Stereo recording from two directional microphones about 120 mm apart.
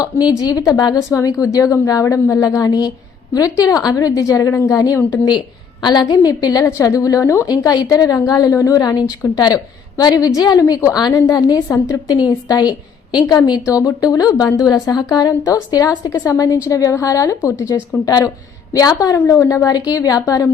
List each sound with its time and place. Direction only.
0.0 s a woman's voice: 35° left (ahead or behind)